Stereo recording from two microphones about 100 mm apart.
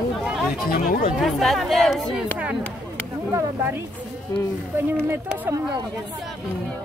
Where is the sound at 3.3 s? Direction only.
30° right (ahead or behind).